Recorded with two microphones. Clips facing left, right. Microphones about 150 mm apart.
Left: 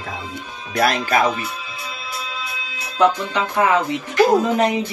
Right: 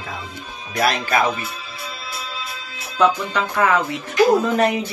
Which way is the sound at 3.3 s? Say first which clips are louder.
Left 1 dB; 20° left (ahead or behind).